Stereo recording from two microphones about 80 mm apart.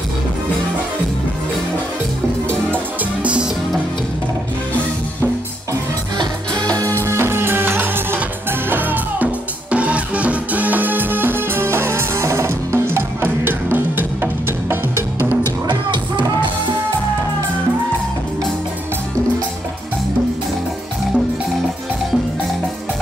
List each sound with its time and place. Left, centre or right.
3.0 s music: centre
6.1 s music: right
7.0 s music: right
15.7 s music: right